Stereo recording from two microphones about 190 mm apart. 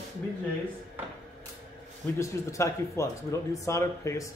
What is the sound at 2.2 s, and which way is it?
Speech, 15° left (ahead or behind).